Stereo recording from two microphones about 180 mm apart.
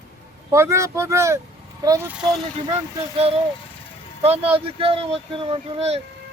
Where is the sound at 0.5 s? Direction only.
15° right (ahead or behind).